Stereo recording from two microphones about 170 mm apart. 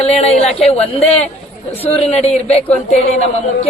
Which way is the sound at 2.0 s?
35° left (ahead or behind).